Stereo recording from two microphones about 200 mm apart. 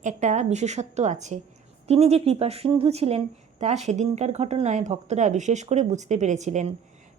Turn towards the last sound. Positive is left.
turn(degrees=-35)  # may be behind; listen again after turning